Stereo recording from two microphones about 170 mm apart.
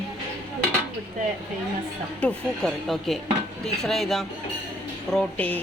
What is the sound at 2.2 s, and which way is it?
A woman's voice, 5° left (ahead or behind).